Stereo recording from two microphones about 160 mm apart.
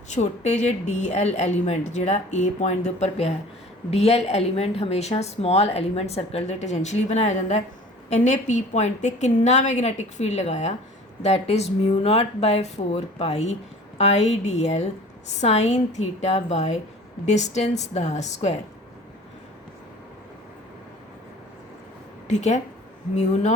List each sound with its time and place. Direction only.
0.1 s a woman's voice: 45° left (ahead or behind)
22.3 s a woman's voice: 45° left (ahead or behind)